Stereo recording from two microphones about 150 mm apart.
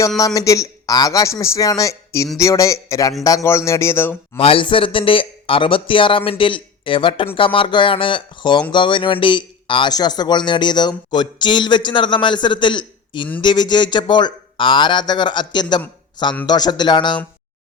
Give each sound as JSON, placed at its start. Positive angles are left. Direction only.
{"t": 0.2, "sound": "a man's voice", "side_deg": 25}
{"t": 4.4, "sound": "a man's voice", "side_deg": 35}